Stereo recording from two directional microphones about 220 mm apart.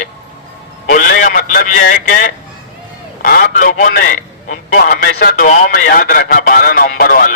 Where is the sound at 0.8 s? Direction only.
40° left (ahead or behind).